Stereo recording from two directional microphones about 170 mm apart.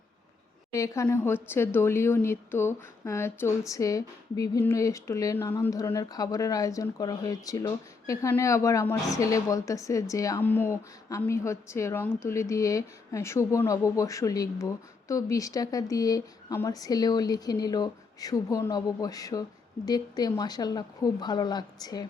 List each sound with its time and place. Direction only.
0.7 s a woman's voice: 20° left (ahead or behind)